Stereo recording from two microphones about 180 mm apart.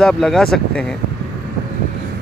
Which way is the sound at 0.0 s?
5° left (ahead or behind).